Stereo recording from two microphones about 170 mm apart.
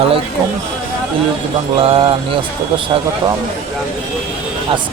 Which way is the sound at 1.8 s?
35° right (ahead or behind).